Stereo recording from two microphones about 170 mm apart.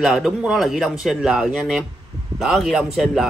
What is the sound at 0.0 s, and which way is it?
A man's voice, 5° right (ahead or behind).